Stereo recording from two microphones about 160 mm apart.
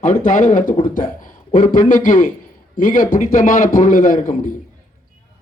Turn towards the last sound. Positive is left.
turn(degrees=55)  # may be behind; listen again after turning